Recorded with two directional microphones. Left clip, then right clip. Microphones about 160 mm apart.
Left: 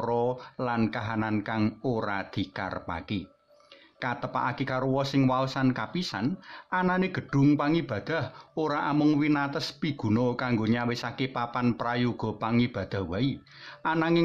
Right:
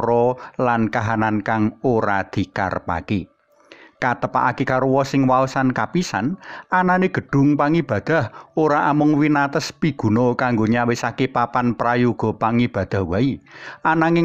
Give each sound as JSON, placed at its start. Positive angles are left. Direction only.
{"t": 0.0, "sound": "speech", "side_deg": -40}
{"t": 8.9, "sound": "a man's voice", "side_deg": -20}
{"t": 9.2, "sound": "speech", "side_deg": -40}